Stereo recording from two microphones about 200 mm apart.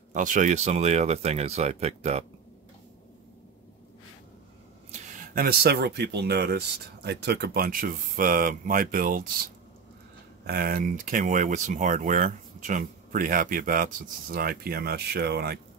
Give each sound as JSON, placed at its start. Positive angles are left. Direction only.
{"t": 0.1, "sound": "speech", "side_deg": -40}
{"t": 4.9, "sound": "speech", "side_deg": -40}
{"t": 10.4, "sound": "speech", "side_deg": -50}